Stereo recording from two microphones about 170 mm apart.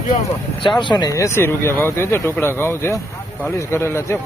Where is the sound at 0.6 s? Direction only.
30° left (ahead or behind).